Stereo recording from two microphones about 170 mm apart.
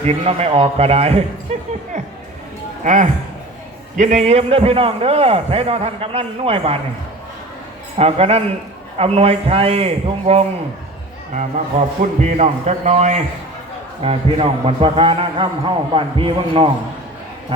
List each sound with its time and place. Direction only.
0.0 s a man's voice: 40° right (ahead or behind)
2.8 s a man's voice: 45° right (ahead or behind)
7.9 s a man's voice: 35° right (ahead or behind)
12.0 s a man's voice: 50° right (ahead or behind); by 16.7 s 30° right (ahead or behind)